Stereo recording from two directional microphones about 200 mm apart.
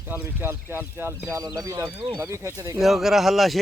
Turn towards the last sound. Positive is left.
turn(degrees=0)  # may be behind; listen again after turning